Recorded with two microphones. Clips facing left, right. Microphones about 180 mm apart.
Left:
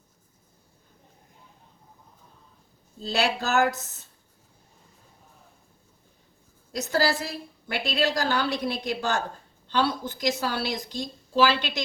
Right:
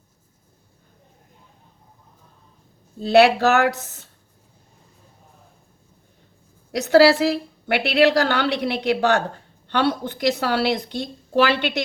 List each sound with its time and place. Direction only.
3.0 s a woman's voice: 60° right (ahead or behind)
6.7 s a woman's voice: 70° right (ahead or behind)